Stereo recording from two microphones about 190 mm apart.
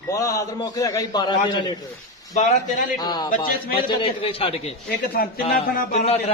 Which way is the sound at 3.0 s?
20° left (ahead or behind).